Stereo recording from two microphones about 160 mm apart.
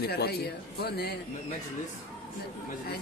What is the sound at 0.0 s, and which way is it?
A man's voice, 90° left.